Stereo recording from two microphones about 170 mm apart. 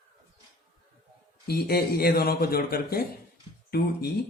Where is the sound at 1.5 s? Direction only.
65° left (ahead or behind).